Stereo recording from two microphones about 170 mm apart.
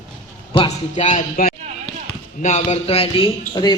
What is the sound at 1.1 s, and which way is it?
A man's voice, 55° left (ahead or behind).